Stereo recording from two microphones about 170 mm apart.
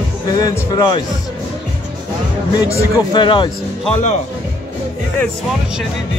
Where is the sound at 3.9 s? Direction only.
45° left (ahead or behind).